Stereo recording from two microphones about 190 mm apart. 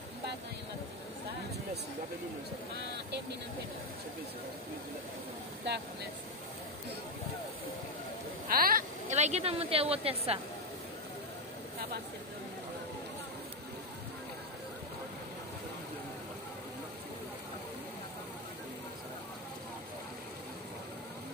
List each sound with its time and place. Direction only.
8.5 s speech: 50° right (ahead or behind); by 10.4 s 30° right (ahead or behind)